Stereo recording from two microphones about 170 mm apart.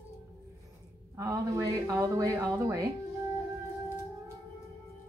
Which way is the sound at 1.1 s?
20° right (ahead or behind).